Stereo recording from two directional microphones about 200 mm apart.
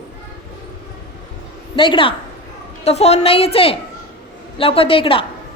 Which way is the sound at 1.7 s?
25° left (ahead or behind).